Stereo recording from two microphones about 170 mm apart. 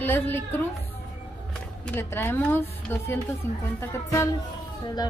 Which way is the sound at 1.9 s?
15° left (ahead or behind).